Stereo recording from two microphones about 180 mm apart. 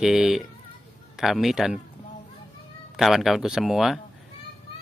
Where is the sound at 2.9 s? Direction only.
Centre (ahead or behind).